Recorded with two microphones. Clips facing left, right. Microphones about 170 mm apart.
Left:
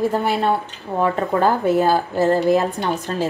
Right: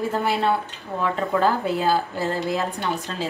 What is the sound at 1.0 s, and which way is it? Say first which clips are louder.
A woman's voice: left 3 dB; 50° left (ahead or behind).